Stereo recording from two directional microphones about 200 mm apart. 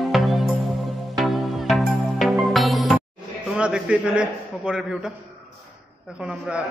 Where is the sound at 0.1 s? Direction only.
Centre (ahead or behind).